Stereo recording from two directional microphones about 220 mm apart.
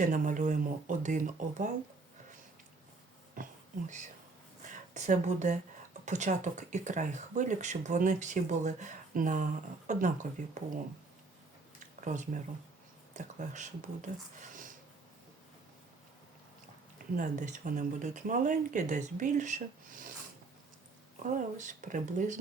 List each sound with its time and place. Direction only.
0.0 s speech: 35° right (ahead or behind)
3.4 s a sound: 35° right (ahead or behind)
4.6 s speech: 35° right (ahead or behind)
11.9 s speech: 35° right (ahead or behind)
17.2 s speech: 35° right (ahead or behind)
21.2 s speech: 35° right (ahead or behind)